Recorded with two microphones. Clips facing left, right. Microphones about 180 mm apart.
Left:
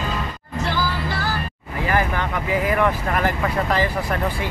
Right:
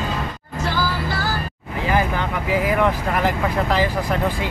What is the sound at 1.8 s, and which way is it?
Speech, 15° right (ahead or behind).